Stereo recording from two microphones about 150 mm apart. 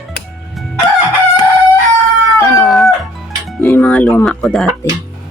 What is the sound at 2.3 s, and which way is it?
Howl, 20° left (ahead or behind).